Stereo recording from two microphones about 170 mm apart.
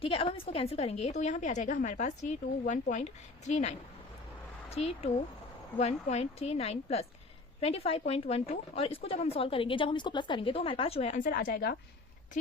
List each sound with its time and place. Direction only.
0.0 s a woman's voice: 30° left (ahead or behind)
11.2 s a woman's voice: 55° left (ahead or behind)